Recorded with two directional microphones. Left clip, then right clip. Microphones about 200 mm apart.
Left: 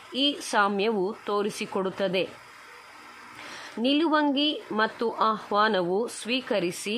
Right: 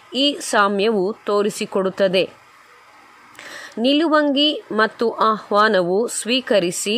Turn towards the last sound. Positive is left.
turn(degrees=-25)  # may be behind; listen again after turning